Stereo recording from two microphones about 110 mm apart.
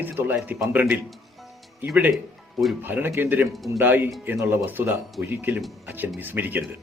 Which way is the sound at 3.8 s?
20° right (ahead or behind).